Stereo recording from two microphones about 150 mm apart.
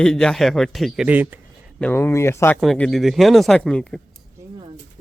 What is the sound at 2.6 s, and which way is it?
A man's voice, centre (ahead or behind).